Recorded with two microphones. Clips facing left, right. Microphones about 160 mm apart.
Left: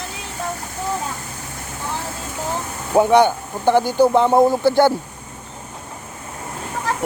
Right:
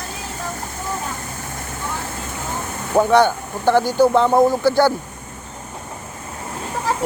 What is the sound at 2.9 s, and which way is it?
Speech, 15° left (ahead or behind).